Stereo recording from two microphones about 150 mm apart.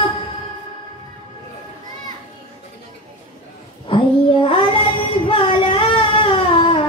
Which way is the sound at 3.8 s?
35° left (ahead or behind).